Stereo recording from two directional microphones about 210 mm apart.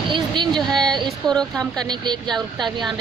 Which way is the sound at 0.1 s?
20° right (ahead or behind).